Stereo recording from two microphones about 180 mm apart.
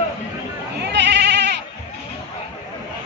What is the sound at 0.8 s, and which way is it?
Sheep, 70° right (ahead or behind).